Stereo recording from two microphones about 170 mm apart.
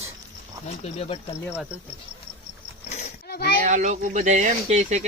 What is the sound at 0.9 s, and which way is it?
Speech, 35° left (ahead or behind).